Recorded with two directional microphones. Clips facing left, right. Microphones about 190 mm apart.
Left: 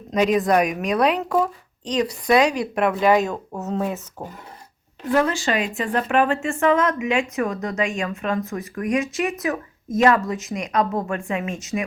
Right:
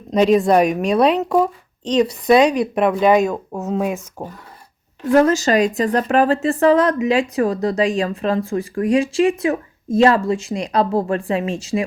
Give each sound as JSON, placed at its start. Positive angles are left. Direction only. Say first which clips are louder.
{"t": 0.1, "sound": "speech", "louder": "right 5 dB", "side_deg": -30}
{"t": 5.1, "sound": "a woman's voice", "louder": "right 7 dB", "side_deg": -45}